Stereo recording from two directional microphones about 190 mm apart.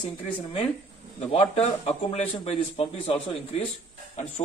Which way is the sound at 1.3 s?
30° left (ahead or behind).